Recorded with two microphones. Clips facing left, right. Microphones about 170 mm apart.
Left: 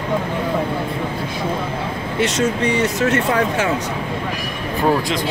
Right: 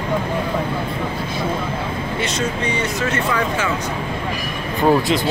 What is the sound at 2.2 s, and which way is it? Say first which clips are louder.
Speech: left 7 dB; 75° left (ahead or behind).